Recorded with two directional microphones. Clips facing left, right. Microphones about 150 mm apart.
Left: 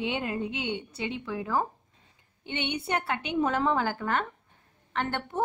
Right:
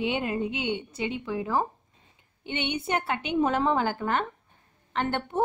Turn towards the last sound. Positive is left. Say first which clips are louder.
# right 3 dB
turn(degrees=-20)  # may be behind; listen again after turning